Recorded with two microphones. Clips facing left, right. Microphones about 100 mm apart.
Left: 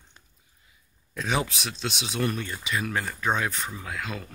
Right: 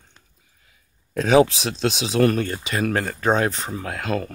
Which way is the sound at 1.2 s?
90° right.